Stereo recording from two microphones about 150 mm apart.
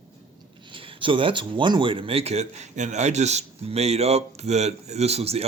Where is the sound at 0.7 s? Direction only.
35° right (ahead or behind).